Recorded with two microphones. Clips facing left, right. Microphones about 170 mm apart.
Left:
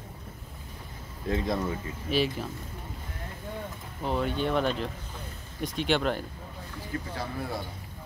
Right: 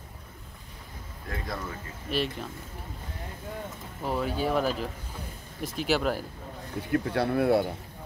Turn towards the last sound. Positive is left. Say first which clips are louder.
# right 11 dB
turn(degrees=-65)  # may be behind; listen again after turning